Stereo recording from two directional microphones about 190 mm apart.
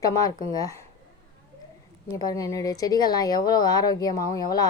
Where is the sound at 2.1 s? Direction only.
15° left (ahead or behind).